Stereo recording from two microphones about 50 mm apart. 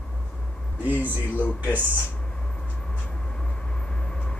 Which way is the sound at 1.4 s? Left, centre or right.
Left.